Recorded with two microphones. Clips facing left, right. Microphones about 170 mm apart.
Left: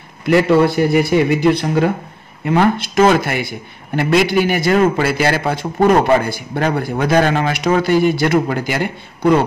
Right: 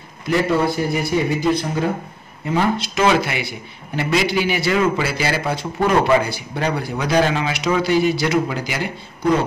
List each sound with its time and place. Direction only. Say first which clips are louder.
0.3 s a man's voice: left 6 dB; 70° left (ahead or behind)